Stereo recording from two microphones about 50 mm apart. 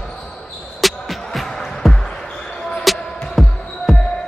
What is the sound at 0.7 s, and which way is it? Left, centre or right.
Music, centre.